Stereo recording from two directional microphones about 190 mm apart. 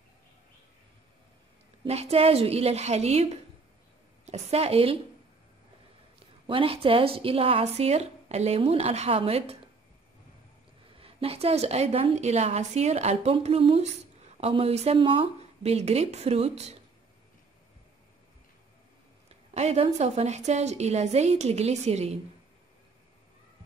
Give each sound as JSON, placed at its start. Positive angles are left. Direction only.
{"t": 1.9, "sound": "a woman's voice", "side_deg": -35}
{"t": 6.1, "sound": "a woman's voice", "side_deg": -30}
{"t": 11.0, "sound": "a woman's voice", "side_deg": -30}
{"t": 19.5, "sound": "a woman's voice", "side_deg": -35}